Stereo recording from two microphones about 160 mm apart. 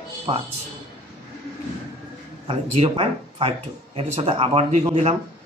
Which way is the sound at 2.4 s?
40° right (ahead or behind).